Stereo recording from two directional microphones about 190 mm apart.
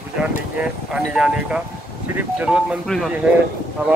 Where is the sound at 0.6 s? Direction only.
5° right (ahead or behind).